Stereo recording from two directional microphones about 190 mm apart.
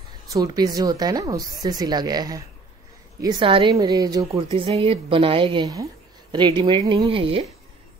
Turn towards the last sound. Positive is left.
turn(degrees=-30)  # may be behind; listen again after turning